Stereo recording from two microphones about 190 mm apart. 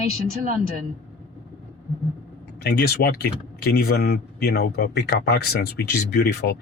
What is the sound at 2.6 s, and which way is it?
Speech, 55° left (ahead or behind).